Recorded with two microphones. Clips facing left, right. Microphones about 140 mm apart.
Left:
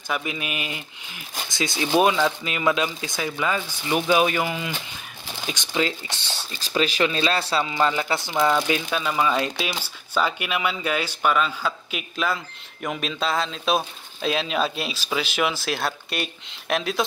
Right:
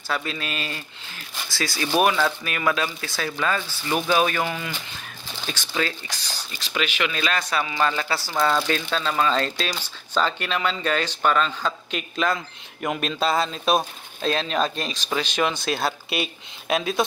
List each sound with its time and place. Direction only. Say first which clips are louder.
0.1 s speech: even; 15° left (ahead or behind); by 17.0 s centre (ahead or behind)